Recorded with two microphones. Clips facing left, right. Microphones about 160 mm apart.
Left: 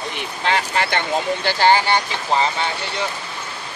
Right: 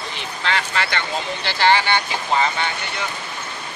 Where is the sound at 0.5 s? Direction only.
45° left (ahead or behind).